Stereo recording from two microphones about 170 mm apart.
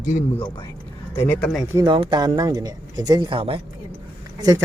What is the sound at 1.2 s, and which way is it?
Speech, 10° left (ahead or behind).